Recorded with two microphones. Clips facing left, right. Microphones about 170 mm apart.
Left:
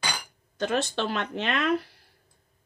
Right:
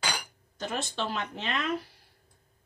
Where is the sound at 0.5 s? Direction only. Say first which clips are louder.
Left 7 dB; 70° left (ahead or behind).